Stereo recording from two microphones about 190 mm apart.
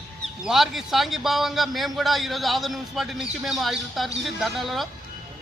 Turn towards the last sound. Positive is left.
turn(degrees=0)  # may be behind; listen again after turning